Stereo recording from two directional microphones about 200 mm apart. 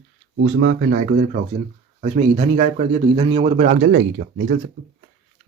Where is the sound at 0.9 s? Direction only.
40° right (ahead or behind).